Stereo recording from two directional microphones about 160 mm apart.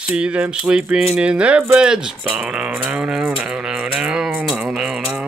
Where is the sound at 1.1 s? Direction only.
5° right (ahead or behind).